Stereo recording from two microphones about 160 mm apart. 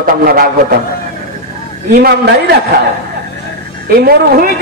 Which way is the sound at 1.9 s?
90° right.